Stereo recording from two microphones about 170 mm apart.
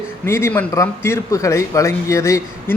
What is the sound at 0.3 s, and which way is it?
A man's voice, 15° left (ahead or behind).